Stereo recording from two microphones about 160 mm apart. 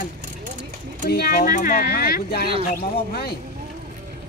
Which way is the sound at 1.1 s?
70° left (ahead or behind).